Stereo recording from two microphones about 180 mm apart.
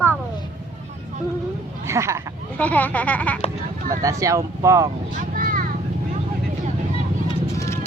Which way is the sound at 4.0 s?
15° right (ahead or behind).